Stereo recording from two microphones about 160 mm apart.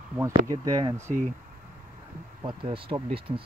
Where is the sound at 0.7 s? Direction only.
20° right (ahead or behind).